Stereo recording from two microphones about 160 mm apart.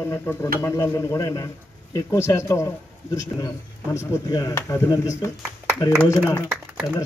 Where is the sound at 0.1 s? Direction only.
15° left (ahead or behind).